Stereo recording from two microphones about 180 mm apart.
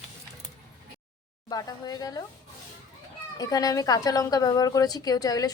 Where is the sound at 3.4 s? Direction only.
20° left (ahead or behind).